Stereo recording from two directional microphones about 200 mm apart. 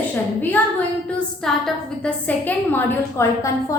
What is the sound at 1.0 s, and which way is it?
A woman's voice, centre (ahead or behind).